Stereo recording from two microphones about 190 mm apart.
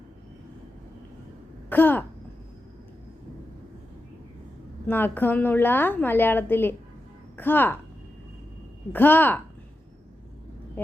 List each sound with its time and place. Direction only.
1.7 s a woman's voice: 10° left (ahead or behind)
4.9 s a woman's voice: 10° left (ahead or behind)
8.9 s a woman's voice: 10° left (ahead or behind)